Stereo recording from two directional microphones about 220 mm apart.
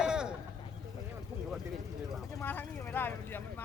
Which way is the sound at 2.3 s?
10° left (ahead or behind).